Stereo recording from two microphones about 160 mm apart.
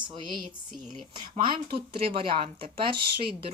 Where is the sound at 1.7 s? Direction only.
75° right (ahead or behind).